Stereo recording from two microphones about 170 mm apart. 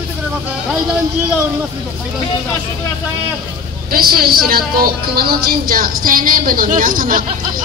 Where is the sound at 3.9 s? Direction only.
60° right (ahead or behind).